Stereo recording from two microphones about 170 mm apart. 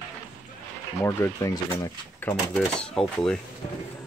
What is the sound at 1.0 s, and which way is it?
Speech, 20° left (ahead or behind).